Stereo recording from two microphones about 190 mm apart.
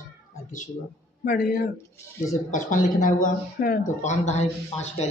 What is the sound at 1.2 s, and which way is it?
Speech, 55° left (ahead or behind).